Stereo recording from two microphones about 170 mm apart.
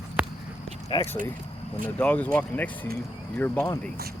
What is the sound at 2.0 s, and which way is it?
Speech, 10° left (ahead or behind).